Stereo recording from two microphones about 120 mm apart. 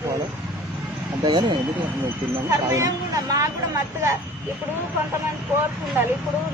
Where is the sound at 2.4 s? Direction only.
25° right (ahead or behind).